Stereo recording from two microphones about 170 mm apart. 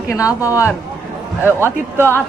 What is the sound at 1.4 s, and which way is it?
Speech, 15° right (ahead or behind).